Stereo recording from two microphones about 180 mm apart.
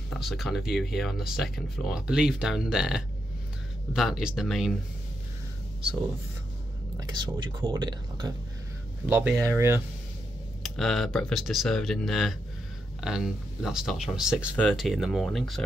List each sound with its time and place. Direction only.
0.1 s speech: centre (ahead or behind)
7.0 s speech: 25° right (ahead or behind)
9.0 s speech: 10° right (ahead or behind)
10.6 s speech: centre (ahead or behind)